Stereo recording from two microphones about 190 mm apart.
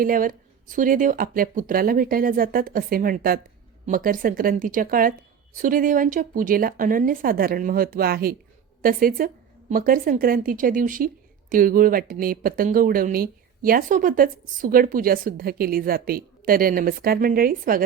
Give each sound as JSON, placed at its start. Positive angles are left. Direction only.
{"t": 0.0, "sound": "a woman's voice", "side_deg": -45}